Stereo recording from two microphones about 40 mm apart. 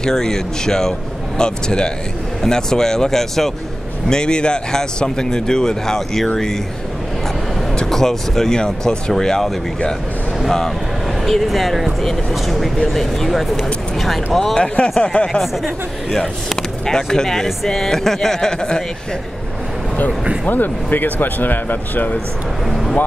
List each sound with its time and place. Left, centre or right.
0.0 s speech: centre
4.1 s speech: left
7.7 s speech: centre
11.2 s speech: centre
14.5 s speech: left
15.4 s speech: centre
16.2 s speech: centre
20.4 s speech: left
22.7 s speech: centre